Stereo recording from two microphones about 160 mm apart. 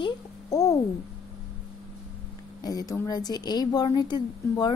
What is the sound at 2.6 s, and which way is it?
A woman's voice, 25° left (ahead or behind).